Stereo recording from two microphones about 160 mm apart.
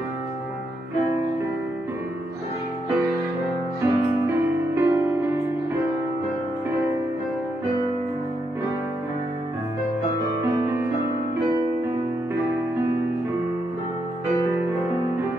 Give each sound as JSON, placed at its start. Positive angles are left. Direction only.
{"t": 3.8, "sound": "music", "side_deg": -15}
{"t": 10.6, "sound": "music", "side_deg": -15}